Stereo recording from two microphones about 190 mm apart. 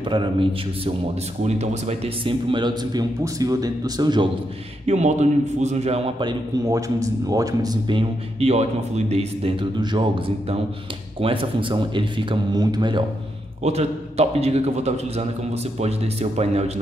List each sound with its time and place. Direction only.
0.1 s speech: 25° right (ahead or behind)
4.8 s a man's voice: 35° right (ahead or behind); by 8.0 s 20° right (ahead or behind)
8.4 s a man's voice: 35° right (ahead or behind)
13.7 s a man's voice: 35° right (ahead or behind)